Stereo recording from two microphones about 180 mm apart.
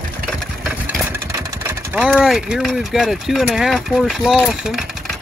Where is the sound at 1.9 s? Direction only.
5° right (ahead or behind).